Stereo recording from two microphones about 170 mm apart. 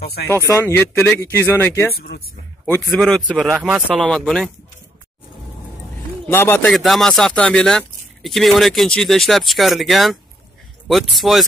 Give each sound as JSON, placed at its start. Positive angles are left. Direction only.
{"t": 0.0, "sound": "speech", "side_deg": 70}
{"t": 0.5, "sound": "speech", "side_deg": 15}
{"t": 2.0, "sound": "speech", "side_deg": 65}
{"t": 2.6, "sound": "speech", "side_deg": 5}
{"t": 6.2, "sound": "speech", "side_deg": 15}
{"t": 6.7, "sound": "speech", "side_deg": 0}